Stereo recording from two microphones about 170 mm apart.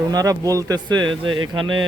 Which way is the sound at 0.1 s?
20° right (ahead or behind).